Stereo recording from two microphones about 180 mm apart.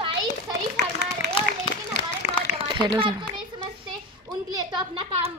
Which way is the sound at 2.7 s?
25° right (ahead or behind).